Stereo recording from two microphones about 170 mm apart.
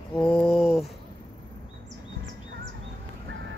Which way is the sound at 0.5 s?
35° left (ahead or behind).